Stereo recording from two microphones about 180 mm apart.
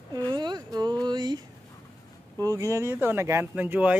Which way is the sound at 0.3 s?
25° right (ahead or behind).